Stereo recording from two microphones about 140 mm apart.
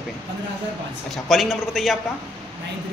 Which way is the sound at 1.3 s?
Centre (ahead or behind).